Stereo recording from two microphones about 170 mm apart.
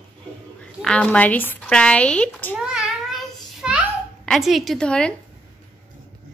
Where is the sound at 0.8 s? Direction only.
5° left (ahead or behind).